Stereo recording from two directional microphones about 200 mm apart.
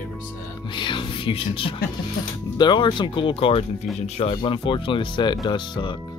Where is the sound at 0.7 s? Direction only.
25° left (ahead or behind).